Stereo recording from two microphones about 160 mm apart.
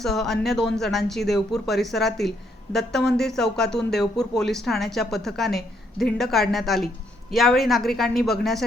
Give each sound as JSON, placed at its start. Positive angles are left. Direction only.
{"t": 0.0, "sound": "speech", "side_deg": 0}